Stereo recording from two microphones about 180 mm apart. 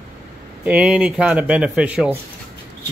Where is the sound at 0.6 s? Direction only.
5° right (ahead or behind).